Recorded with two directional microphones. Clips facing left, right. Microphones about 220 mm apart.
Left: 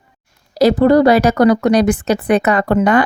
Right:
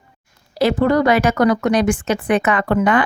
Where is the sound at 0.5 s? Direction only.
40° left (ahead or behind).